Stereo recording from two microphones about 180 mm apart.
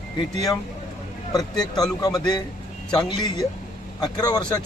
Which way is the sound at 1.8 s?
20° left (ahead or behind).